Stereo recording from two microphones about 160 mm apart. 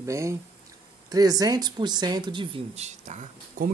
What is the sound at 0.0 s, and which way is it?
Speech, 20° right (ahead or behind).